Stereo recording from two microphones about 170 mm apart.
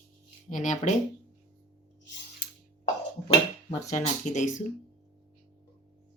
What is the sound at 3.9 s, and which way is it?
Speech, 45° left (ahead or behind).